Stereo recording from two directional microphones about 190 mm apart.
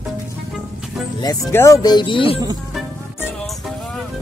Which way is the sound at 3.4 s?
Centre (ahead or behind).